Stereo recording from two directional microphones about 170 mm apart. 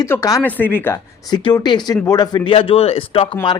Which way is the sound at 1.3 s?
25° left (ahead or behind).